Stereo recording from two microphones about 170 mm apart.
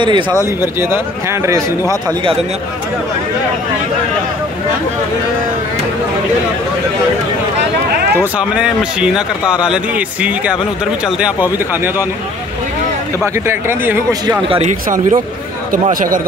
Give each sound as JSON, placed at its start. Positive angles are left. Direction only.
{"t": 0.0, "sound": "speech", "side_deg": -30}
{"t": 0.7, "sound": "speech", "side_deg": -15}
{"t": 8.4, "sound": "speech", "side_deg": -5}
{"t": 13.2, "sound": "speech", "side_deg": -15}
{"t": 14.5, "sound": "speech", "side_deg": -45}